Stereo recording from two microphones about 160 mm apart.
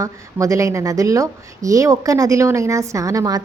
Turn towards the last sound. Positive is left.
turn(degrees=-20)  # may be behind; listen again after turning